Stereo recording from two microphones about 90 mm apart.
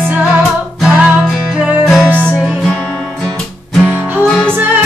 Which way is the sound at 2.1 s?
15° left (ahead or behind).